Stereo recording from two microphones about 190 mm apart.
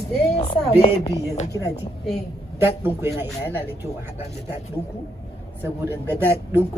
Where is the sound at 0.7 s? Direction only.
30° left (ahead or behind).